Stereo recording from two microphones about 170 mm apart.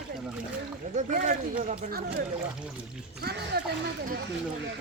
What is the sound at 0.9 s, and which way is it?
Speech, 45° right (ahead or behind).